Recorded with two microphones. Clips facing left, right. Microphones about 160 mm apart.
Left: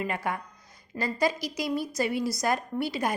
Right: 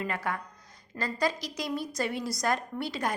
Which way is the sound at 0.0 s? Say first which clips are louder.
Left 2 dB; 15° left (ahead or behind).